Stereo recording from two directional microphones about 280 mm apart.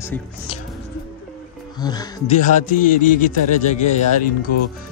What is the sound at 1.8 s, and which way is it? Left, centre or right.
Speech, centre.